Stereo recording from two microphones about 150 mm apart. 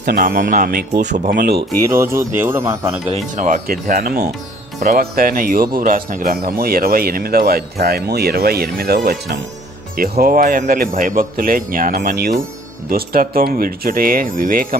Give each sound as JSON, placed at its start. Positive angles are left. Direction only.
{"t": 0.0, "sound": "speech", "side_deg": -85}
{"t": 1.0, "sound": "speech", "side_deg": -55}
{"t": 1.3, "sound": "speech", "side_deg": -90}
{"t": 1.9, "sound": "speech", "side_deg": -20}
{"t": 3.3, "sound": "speech", "side_deg": -55}
{"t": 4.8, "sound": "speech", "side_deg": -65}
{"t": 10.0, "sound": "speech", "side_deg": -75}